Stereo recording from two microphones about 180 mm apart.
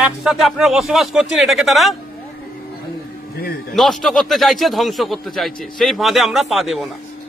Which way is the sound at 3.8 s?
Centre (ahead or behind).